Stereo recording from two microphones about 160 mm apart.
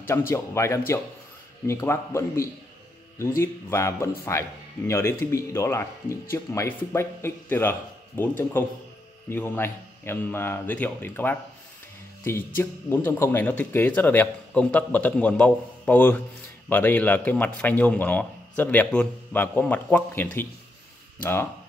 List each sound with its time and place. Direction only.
0.0 s speech: 15° left (ahead or behind)